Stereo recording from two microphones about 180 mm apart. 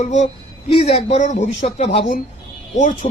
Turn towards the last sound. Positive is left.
turn(degrees=45)  # may be behind; listen again after turning